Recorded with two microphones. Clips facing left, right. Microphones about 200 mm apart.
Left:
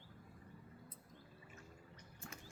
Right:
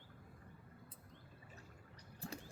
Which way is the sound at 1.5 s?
35° right (ahead or behind).